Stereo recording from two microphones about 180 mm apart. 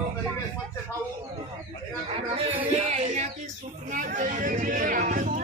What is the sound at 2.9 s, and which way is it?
Speech, 40° right (ahead or behind).